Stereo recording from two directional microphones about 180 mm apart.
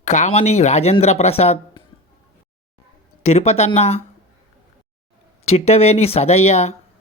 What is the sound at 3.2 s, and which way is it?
Speech, 35° left (ahead or behind).